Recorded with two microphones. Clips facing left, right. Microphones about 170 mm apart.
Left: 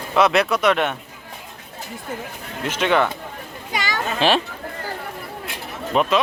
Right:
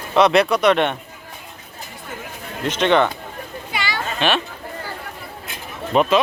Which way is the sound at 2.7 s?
5° left (ahead or behind).